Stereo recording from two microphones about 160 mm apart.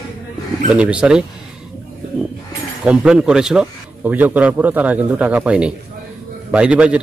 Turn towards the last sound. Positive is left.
turn(degrees=-5)  # may be behind; listen again after turning